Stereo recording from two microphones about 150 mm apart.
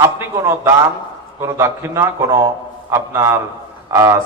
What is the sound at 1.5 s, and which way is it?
A man's voice, 20° right (ahead or behind).